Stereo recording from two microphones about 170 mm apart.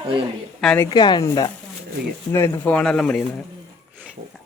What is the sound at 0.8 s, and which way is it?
Speech, 25° left (ahead or behind).